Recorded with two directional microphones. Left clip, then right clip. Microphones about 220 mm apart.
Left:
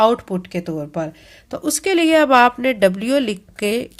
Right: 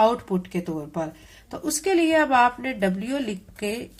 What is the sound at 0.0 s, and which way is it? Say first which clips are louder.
A woman's voice: left 5 dB; 40° left (ahead or behind).